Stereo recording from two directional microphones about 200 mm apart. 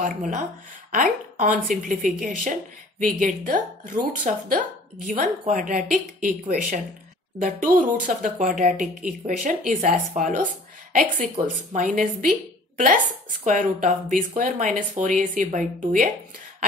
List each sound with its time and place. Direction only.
0.0 s speech: 40° right (ahead or behind)